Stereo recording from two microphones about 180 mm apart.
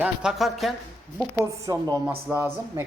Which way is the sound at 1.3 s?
15° right (ahead or behind).